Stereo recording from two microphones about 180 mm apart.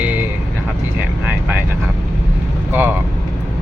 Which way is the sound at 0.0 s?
10° right (ahead or behind).